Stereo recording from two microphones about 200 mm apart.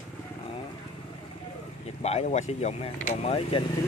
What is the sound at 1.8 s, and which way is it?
Speech, 30° left (ahead or behind).